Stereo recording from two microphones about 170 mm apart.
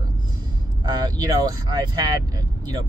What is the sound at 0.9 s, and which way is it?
Speech, 25° right (ahead or behind).